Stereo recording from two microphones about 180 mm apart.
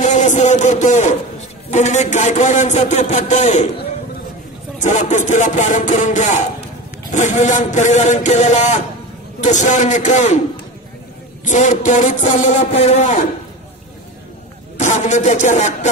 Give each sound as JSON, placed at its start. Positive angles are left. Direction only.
{"t": 0.0, "sound": "a sound", "side_deg": 40}
{"t": 1.7, "sound": "speech", "side_deg": 40}
{"t": 4.8, "sound": "speech", "side_deg": 45}
{"t": 11.4, "sound": "speech", "side_deg": 45}
{"t": 14.8, "sound": "speech", "side_deg": 40}